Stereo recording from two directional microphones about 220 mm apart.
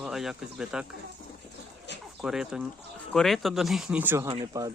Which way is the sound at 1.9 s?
50° left (ahead or behind).